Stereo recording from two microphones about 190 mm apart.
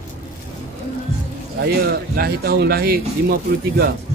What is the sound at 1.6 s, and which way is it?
Speech, 55° right (ahead or behind).